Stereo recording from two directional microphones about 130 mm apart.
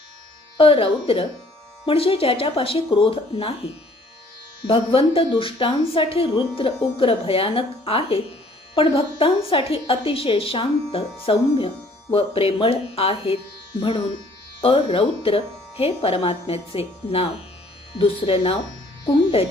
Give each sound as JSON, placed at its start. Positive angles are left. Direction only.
{"t": 0.5, "sound": "speech", "side_deg": 45}
{"t": 4.6, "sound": "speech", "side_deg": 45}